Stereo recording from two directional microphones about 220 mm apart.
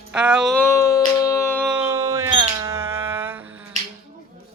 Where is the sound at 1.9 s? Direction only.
15° right (ahead or behind).